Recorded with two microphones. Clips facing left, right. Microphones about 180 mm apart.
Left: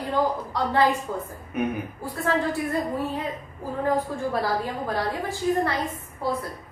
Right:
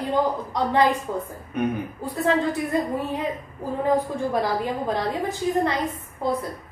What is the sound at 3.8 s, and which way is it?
A woman's voice, 20° right (ahead or behind).